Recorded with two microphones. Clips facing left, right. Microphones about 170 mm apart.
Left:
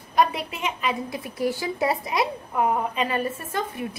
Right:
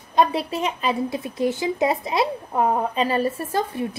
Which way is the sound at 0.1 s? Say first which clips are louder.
Right 3 dB; 30° right (ahead or behind).